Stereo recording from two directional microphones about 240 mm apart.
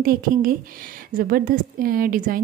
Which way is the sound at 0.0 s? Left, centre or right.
Right.